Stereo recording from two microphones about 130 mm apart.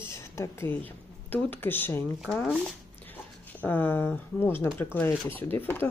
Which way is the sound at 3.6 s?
15° left (ahead or behind).